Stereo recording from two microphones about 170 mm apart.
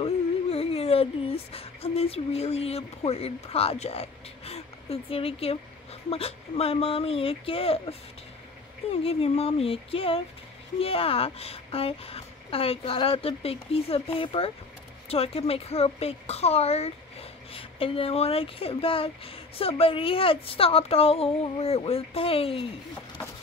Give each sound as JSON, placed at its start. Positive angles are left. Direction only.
{"t": 0.0, "sound": "a woman's voice", "side_deg": 35}
{"t": 9.0, "sound": "a woman's voice", "side_deg": 35}